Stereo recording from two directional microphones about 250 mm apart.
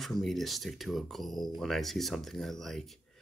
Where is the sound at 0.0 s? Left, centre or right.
Centre.